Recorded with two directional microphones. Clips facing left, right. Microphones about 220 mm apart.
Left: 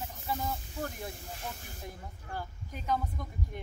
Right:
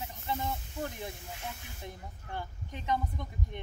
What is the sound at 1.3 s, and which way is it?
Speech, 40° left (ahead or behind).